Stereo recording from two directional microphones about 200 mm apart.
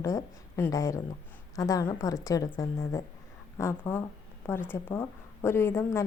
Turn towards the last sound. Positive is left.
turn(degrees=15)  # may be behind; listen again after turning